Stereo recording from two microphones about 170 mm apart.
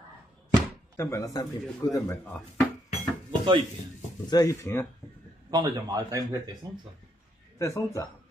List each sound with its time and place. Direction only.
0.6 s speech: 15° left (ahead or behind)
3.3 s dishes: 30° right (ahead or behind)
4.3 s speech: 20° left (ahead or behind)
5.5 s a man's voice: 25° right (ahead or behind)
7.5 s speech: 15° left (ahead or behind)